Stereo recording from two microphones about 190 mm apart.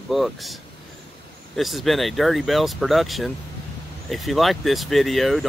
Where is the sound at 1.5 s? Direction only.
Centre (ahead or behind).